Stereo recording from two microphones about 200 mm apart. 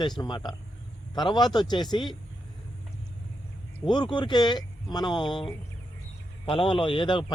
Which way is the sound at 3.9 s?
20° left (ahead or behind).